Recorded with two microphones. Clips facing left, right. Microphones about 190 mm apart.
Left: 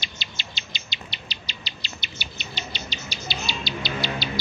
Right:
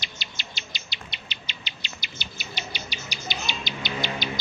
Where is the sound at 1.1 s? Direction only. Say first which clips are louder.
Left 2 dB; 35° left (ahead or behind).